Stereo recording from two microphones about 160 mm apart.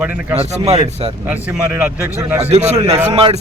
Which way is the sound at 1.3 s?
10° right (ahead or behind).